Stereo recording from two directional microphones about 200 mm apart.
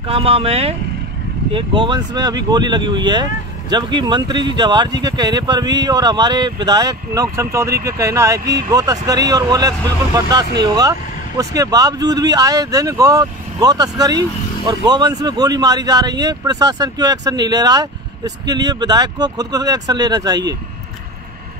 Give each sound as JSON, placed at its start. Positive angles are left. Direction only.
{"t": 0.1, "sound": "speech", "side_deg": -30}